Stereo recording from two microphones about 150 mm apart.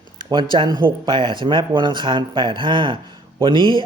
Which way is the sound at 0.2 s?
30° right (ahead or behind).